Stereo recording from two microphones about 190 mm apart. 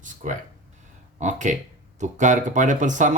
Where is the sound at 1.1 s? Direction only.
40° right (ahead or behind).